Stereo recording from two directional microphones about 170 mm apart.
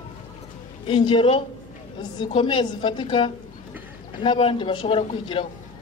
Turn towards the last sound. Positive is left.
turn(degrees=30)  # may be behind; listen again after turning